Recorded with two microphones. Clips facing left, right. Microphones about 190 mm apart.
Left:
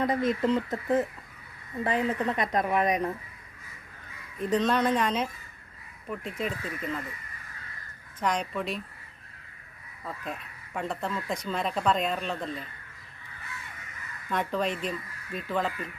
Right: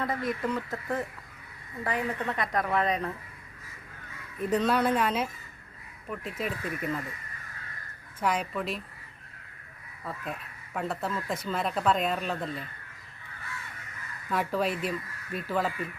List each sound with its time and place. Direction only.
0.0 s a woman's voice: 20° left (ahead or behind)
4.4 s speech: 10° right (ahead or behind)
8.2 s speech: 5° right (ahead or behind)
10.0 s speech: 5° right (ahead or behind)
14.3 s speech: 5° right (ahead or behind)